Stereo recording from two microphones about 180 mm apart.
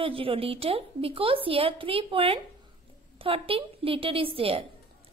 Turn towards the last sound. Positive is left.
turn(degrees=-30)  # may be behind; listen again after turning